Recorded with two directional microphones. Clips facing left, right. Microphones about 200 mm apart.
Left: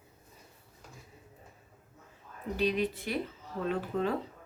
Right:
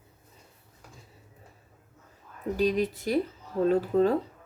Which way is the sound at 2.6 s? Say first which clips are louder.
Right 4 dB; 40° right (ahead or behind).